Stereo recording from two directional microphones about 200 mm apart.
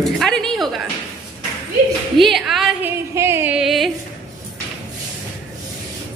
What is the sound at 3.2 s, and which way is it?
Music, 10° right (ahead or behind).